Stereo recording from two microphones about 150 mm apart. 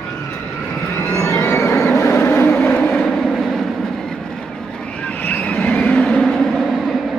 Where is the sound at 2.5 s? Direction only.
5° left (ahead or behind).